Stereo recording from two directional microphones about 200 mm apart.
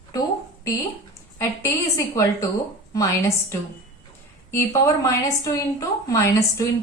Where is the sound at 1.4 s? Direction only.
15° left (ahead or behind).